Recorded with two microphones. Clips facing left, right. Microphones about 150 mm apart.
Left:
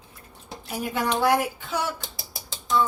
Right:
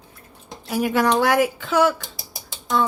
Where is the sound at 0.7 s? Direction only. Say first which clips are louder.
Right 7 dB; 80° right.